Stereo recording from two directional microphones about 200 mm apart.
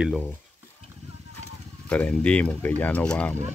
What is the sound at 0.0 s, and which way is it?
Stir, centre (ahead or behind).